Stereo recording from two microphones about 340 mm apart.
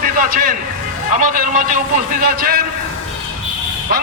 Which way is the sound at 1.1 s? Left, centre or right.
Right.